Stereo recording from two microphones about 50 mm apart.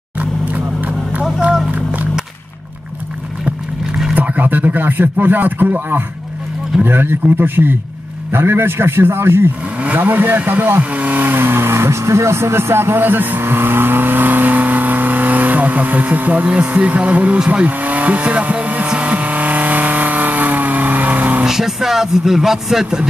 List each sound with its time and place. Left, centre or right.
1.7 s music: right
4.1 s a man's voice: right
9.9 s speech: right
10.8 s speech: right
11.3 s vehicle: right
21.5 s speech: centre